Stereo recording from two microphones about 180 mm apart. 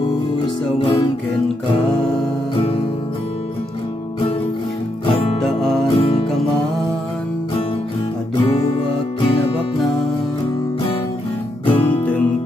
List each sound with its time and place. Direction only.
5.0 s music: 30° left (ahead or behind)
5.4 s music: centre (ahead or behind)
5.9 s music: 30° left (ahead or behind)
11.6 s music: 30° left (ahead or behind)